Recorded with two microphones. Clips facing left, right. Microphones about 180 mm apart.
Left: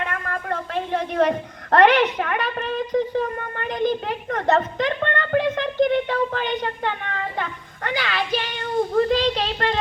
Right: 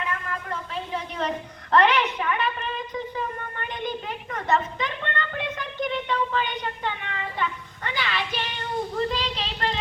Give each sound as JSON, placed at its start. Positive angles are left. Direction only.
{"t": 0.0, "sound": "a woman's voice", "side_deg": 55}
{"t": 4.0, "sound": "a woman's voice", "side_deg": 55}